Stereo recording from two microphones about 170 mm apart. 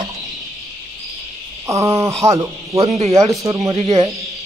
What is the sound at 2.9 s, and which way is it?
Speech, 40° right (ahead or behind).